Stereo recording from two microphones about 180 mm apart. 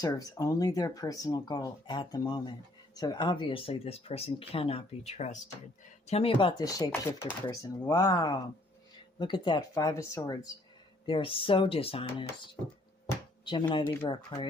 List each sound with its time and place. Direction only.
0.0 s speech: 20° left (ahead or behind)
6.6 s speech: 20° left (ahead or behind)
8.1 s speech: 25° left (ahead or behind)
13.5 s speech: 25° left (ahead or behind)